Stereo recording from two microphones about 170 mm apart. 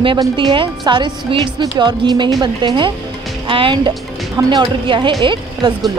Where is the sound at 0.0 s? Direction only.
30° right (ahead or behind).